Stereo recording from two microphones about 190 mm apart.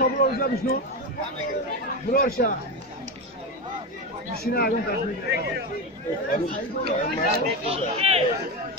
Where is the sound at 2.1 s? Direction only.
50° left (ahead or behind).